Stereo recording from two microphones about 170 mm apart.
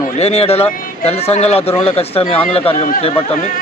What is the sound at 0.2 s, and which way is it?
Speech, 35° left (ahead or behind).